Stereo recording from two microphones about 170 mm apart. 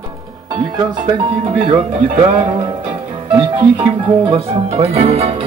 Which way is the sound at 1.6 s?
40° right (ahead or behind).